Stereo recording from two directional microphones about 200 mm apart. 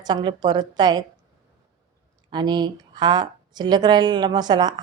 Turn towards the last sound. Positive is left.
turn(degrees=-20)  # may be behind; listen again after turning